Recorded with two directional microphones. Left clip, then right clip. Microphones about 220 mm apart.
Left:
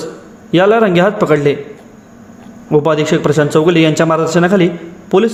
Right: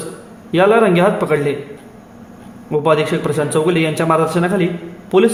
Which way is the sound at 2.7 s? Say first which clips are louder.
Left 3 dB; 20° left (ahead or behind).